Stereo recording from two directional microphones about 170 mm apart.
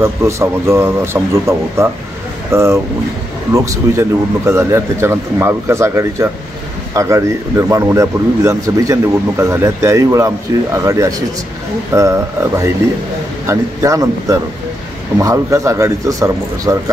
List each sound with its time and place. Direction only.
0.0 s speech: 15° right (ahead or behind)